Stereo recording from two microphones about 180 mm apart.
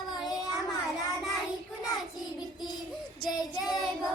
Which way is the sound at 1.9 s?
Centre (ahead or behind).